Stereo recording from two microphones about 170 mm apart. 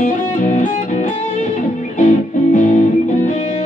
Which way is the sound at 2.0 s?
50° left (ahead or behind).